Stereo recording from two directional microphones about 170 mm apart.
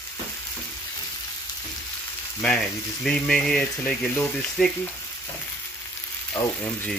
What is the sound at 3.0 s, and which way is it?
Speech, 5° left (ahead or behind).